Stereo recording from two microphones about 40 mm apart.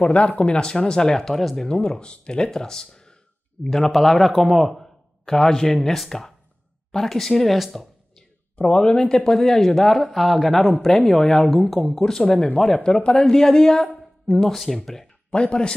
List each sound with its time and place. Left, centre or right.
0.0 s speech: left; by 4.9 s centre
5.2 s speech: centre
8.5 s speech: left; by 10.7 s centre
10.7 s speech: centre
11.0 s speech: centre
11.2 s speech: centre
14.4 s speech: centre
15.3 s speech: left